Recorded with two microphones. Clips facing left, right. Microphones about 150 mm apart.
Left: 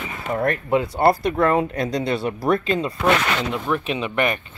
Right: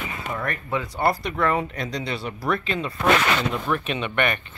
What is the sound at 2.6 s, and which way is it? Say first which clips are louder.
Speech: left 5 dB; 40° left (ahead or behind).